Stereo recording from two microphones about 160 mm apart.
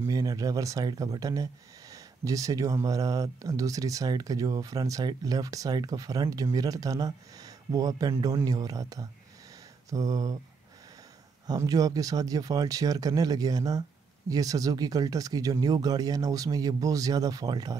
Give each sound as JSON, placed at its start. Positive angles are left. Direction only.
{"t": 0.0, "sound": "speech", "side_deg": -20}
{"t": 11.4, "sound": "speech", "side_deg": -25}